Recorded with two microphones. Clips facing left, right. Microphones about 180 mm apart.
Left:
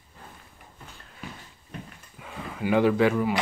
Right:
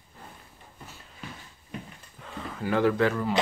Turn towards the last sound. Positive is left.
turn(degrees=10)  # may be behind; listen again after turning